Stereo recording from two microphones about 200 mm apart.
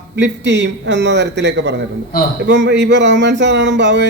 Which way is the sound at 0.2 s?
60° right (ahead or behind).